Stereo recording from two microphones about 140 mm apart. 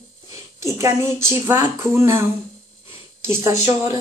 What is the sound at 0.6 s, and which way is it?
A woman's voice, 20° right (ahead or behind).